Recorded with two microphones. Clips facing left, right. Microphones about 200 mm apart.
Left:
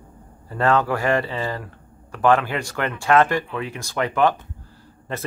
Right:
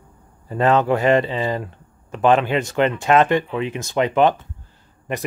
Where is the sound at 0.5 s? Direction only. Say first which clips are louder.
Right 3 dB; 20° right (ahead or behind).